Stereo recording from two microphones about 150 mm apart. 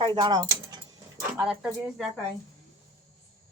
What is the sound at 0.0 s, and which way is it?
Speech, 30° right (ahead or behind).